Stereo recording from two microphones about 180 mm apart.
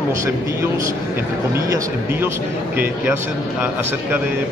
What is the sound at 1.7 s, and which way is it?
Speech, 15° right (ahead or behind).